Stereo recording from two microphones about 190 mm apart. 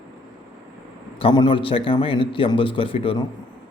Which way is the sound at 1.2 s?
25° left (ahead or behind).